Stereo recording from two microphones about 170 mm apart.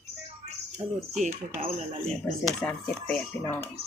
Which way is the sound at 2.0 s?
5° left (ahead or behind).